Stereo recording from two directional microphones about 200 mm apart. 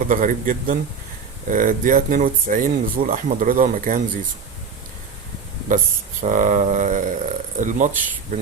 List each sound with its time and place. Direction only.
0.1 s speech: 40° right (ahead or behind)
6.2 s speech: 40° right (ahead or behind)